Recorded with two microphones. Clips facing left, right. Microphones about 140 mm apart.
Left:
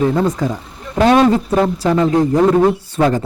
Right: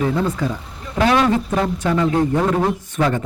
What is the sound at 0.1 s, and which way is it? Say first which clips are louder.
A man's voice: left 4 dB; 40° left (ahead or behind).